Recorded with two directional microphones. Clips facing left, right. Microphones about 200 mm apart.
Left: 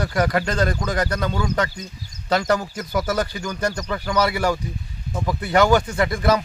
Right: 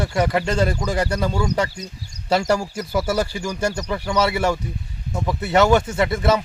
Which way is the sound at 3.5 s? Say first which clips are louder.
Right 1 dB; 10° right (ahead or behind).